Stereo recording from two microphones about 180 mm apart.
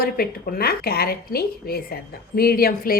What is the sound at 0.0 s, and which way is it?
A woman's voice, 55° left (ahead or behind).